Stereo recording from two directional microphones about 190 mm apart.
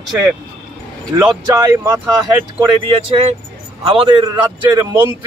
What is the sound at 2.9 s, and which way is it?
A man's voice, 30° right (ahead or behind).